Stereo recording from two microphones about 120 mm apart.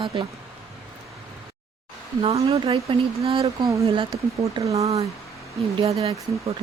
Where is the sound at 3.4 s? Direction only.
25° right (ahead or behind).